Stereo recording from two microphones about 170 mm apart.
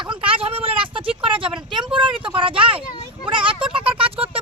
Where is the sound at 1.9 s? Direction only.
30° right (ahead or behind).